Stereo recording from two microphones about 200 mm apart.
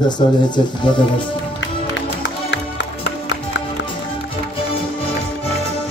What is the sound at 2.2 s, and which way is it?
Music, 65° left (ahead or behind).